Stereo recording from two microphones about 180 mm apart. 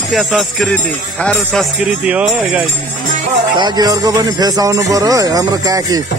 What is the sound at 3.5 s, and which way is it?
Speech, 25° right (ahead or behind).